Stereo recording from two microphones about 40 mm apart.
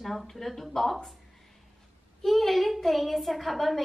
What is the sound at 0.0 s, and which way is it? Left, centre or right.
Speech, centre.